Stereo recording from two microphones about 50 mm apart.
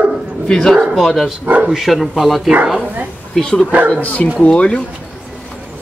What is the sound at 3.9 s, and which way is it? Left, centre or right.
Speech, left.